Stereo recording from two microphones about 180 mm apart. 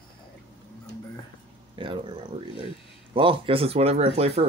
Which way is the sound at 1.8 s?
25° right (ahead or behind).